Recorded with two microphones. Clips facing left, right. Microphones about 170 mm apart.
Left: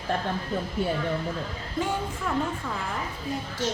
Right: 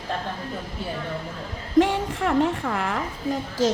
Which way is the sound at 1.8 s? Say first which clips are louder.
Right 8 dB; 90° right.